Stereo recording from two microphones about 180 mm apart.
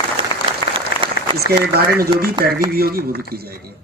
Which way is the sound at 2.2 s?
55° right (ahead or behind).